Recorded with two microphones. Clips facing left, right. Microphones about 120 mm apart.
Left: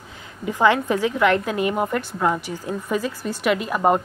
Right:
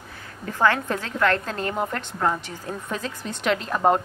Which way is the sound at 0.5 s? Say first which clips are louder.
Left 4 dB; 15° left (ahead or behind).